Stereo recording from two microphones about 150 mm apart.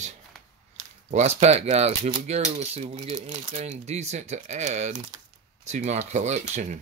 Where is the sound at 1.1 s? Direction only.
45° right (ahead or behind).